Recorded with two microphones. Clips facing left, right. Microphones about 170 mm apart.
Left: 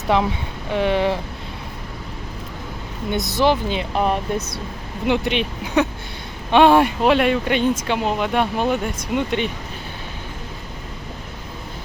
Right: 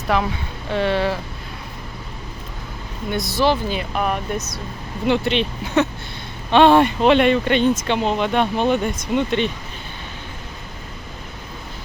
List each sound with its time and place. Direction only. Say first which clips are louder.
0.1 s speech: left 2 dB; 20° left (ahead or behind)
3.1 s speech: left 1 dB; 20° left (ahead or behind)
5.0 s speech: right 1 dB; 15° left (ahead or behind)